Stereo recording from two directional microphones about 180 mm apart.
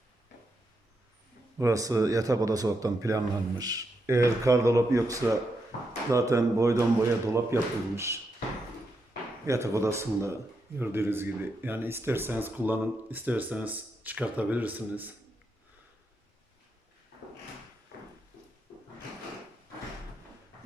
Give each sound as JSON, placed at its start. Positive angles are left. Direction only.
{"t": 1.5, "sound": "a man's voice", "side_deg": -20}
{"t": 9.5, "sound": "speech", "side_deg": -15}